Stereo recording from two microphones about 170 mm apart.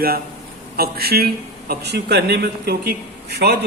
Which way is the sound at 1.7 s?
75° right (ahead or behind).